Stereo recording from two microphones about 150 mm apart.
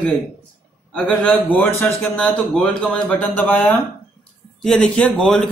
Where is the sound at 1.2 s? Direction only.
10° left (ahead or behind).